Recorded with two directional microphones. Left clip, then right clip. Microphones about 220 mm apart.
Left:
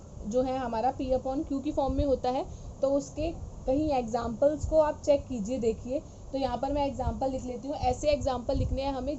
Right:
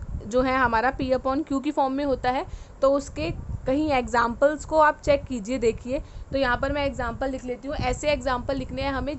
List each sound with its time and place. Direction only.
0.3 s a woman's voice: 40° right (ahead or behind)
1.8 s a woman's voice: 20° right (ahead or behind)
2.8 s a woman's voice: 35° right (ahead or behind)